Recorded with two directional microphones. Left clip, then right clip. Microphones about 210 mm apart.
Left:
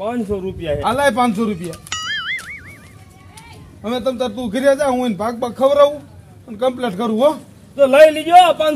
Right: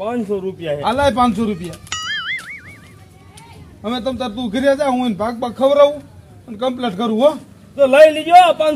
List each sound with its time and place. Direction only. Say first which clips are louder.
0.0 s a man's voice: right 1 dB; 10° right (ahead or behind)
0.8 s a man's voice: right 1 dB; 15° left (ahead or behind)
1.7 s music: even; centre (ahead or behind)
3.8 s a man's voice: left 2 dB; 15° left (ahead or behind)
7.7 s a man's voice: even; 10° right (ahead or behind)